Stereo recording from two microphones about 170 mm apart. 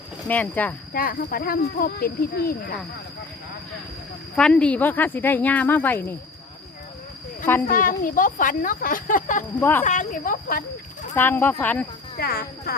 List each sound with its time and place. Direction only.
0.3 s speech: 10° left (ahead or behind)
0.9 s speech: 60° left (ahead or behind)
4.4 s speech: 5° left (ahead or behind)
7.7 s speech: 55° left (ahead or behind)
9.6 s speech: 10° left (ahead or behind)
9.8 s speech: 45° left (ahead or behind)
11.1 s speech: 10° left (ahead or behind)
12.1 s speech: 60° left (ahead or behind)